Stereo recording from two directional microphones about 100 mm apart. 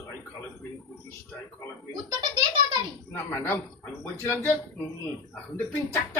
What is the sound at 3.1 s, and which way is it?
Speech, 25° left (ahead or behind).